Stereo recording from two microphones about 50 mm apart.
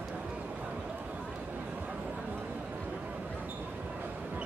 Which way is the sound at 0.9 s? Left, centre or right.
Right.